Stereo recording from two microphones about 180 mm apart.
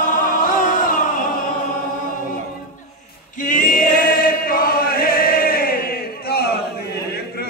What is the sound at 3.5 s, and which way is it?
Choir, 50° left (ahead or behind).